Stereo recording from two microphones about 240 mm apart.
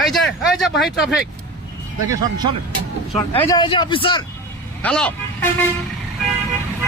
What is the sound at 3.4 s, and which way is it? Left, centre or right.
Speech, centre.